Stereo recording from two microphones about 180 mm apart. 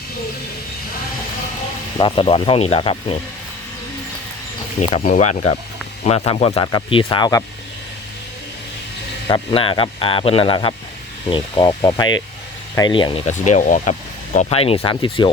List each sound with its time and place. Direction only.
2.0 s a man's voice: 30° left (ahead or behind)
4.8 s a man's voice: 40° left (ahead or behind); by 7.4 s 20° left (ahead or behind)
9.3 s a man's voice: 30° left (ahead or behind)
13.2 s speech: 40° left (ahead or behind)
14.3 s speech: 35° left (ahead or behind)